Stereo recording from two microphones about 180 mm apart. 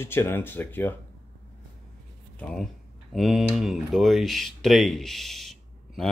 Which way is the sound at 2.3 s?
5° left (ahead or behind).